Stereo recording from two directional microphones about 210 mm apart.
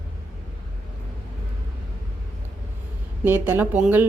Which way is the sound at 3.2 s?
10° right (ahead or behind).